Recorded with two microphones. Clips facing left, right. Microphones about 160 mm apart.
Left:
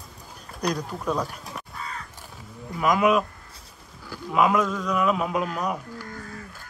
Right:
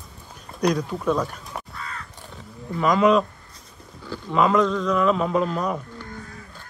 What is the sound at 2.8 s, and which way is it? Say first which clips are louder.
Speech: right 3 dB; 5° left (ahead or behind).